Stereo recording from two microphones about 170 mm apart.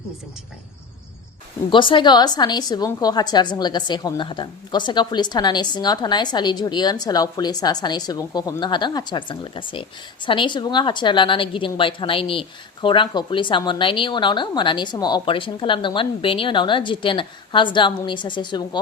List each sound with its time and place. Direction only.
1.7 s a woman's voice: 30° left (ahead or behind)